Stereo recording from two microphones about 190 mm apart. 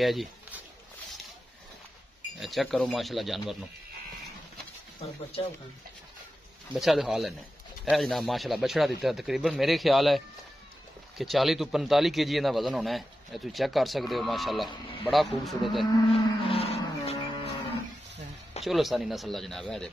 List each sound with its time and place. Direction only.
0.0 s speech: centre (ahead or behind)
2.4 s a man's voice: centre (ahead or behind)
6.7 s a man's voice: centre (ahead or behind)
16.1 s a sound: 30° left (ahead or behind)
18.6 s a man's voice: centre (ahead or behind)